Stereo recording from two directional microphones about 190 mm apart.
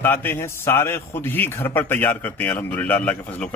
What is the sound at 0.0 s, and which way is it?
A man's voice, 10° left (ahead or behind).